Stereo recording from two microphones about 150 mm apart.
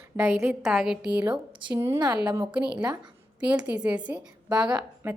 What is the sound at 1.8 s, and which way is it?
Speech, 20° right (ahead or behind).